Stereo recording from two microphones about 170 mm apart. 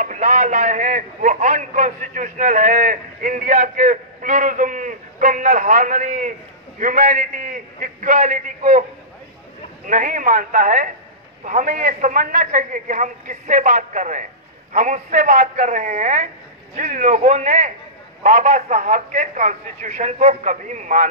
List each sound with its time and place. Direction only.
0.0 s a man's voice: 45° right (ahead or behind)
9.8 s a man's voice: 50° right (ahead or behind)